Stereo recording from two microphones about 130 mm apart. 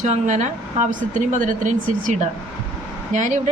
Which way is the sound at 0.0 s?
70° right (ahead or behind).